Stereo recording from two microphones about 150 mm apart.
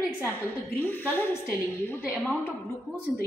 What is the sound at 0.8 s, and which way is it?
A woman's voice, 10° left (ahead or behind).